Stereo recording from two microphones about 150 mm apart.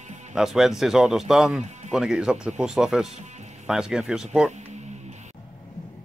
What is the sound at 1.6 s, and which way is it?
Music, 50° right (ahead or behind).